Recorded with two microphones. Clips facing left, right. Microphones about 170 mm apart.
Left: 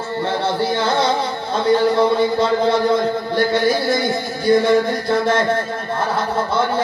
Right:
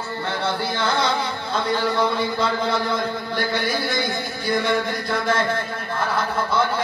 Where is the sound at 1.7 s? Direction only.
25° left (ahead or behind).